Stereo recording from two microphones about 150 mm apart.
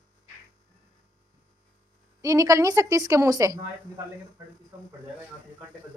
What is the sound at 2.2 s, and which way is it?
A woman's voice, 20° right (ahead or behind).